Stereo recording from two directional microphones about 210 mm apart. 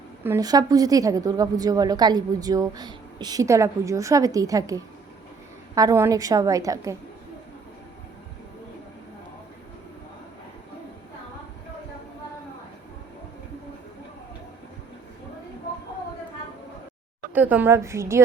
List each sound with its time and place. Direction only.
0.3 s a woman's voice: 15° right (ahead or behind)
17.3 s a woman's voice: 10° right (ahead or behind)